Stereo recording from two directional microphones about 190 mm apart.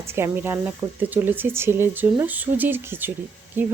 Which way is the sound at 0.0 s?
15° right (ahead or behind).